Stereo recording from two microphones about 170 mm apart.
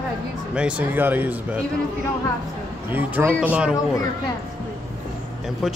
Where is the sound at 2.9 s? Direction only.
10° right (ahead or behind).